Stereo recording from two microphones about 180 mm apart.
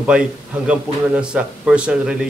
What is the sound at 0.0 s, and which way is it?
A man's voice, 5° right (ahead or behind).